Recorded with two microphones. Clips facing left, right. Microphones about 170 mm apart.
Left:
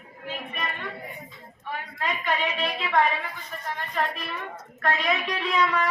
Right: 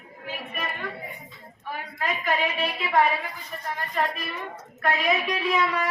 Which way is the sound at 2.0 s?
5° right (ahead or behind).